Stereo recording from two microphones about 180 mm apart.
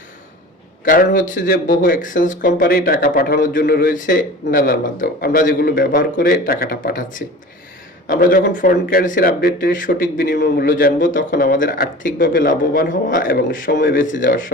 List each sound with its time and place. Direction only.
0.9 s speech: 50° left (ahead or behind)